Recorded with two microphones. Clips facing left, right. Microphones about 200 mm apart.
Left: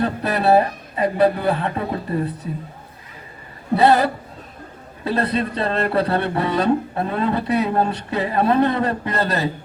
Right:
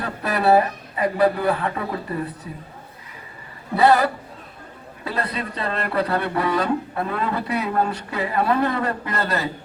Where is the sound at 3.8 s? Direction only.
25° left (ahead or behind).